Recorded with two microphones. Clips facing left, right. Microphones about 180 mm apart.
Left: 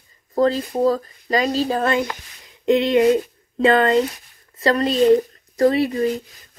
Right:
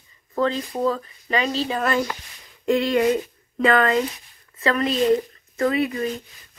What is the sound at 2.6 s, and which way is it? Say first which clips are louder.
Speech: left 4 dB; 20° left (ahead or behind).